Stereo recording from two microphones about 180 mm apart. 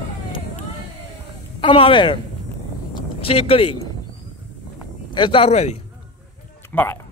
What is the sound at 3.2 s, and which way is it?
Speech, 30° left (ahead or behind).